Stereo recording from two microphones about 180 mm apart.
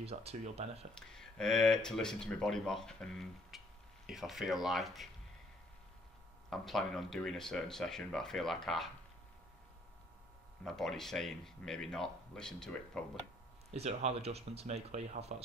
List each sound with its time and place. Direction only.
0.0 s speech: 35° right (ahead or behind)
0.9 s speech: 5° left (ahead or behind)
6.5 s speech: centre (ahead or behind)
10.6 s speech: centre (ahead or behind)
13.7 s speech: 35° right (ahead or behind)